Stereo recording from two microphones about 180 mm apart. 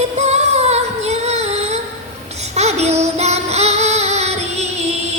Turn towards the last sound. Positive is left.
turn(degrees=-35)  # may be behind; listen again after turning